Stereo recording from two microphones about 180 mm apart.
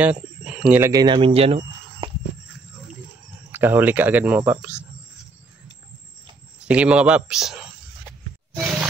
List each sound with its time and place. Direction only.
0.0 s speech: 5° right (ahead or behind); by 2.0 s 35° right (ahead or behind)
3.5 s speech: 10° right (ahead or behind)
6.6 s a man's voice: 5° right (ahead or behind)